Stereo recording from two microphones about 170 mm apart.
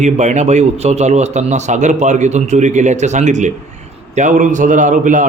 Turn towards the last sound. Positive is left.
turn(degrees=-50)  # may be behind; listen again after turning